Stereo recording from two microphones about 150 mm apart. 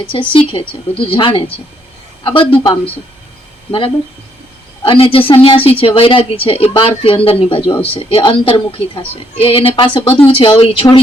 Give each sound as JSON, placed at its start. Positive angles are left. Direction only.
{"t": 0.0, "sound": "a woman's voice", "side_deg": 35}